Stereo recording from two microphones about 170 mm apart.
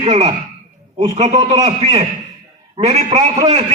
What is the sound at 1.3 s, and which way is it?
Speech, 20° right (ahead or behind).